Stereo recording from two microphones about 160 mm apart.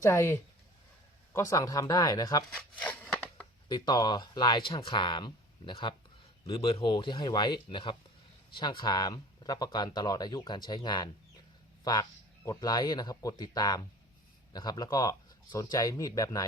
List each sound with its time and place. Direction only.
0.0 s speech: 15° left (ahead or behind)
2.6 s scissors: 10° left (ahead or behind)
3.7 s speech: 25° left (ahead or behind)